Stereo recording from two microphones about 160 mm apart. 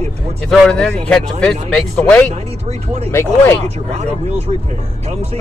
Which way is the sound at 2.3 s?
40° right (ahead or behind).